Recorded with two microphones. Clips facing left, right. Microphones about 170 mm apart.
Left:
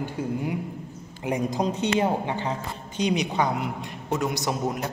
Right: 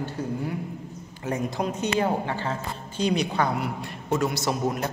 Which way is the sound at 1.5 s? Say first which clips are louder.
Left 2 dB; 35° left (ahead or behind).